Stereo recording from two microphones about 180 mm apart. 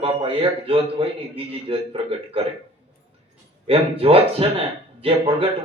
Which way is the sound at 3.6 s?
30° right (ahead or behind).